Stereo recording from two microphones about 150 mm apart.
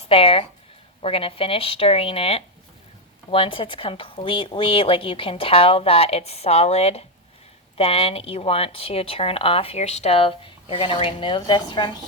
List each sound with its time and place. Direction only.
0.1 s speech: 40° left (ahead or behind)